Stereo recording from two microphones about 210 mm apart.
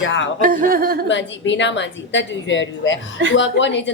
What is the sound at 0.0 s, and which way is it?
Speech, 60° left (ahead or behind).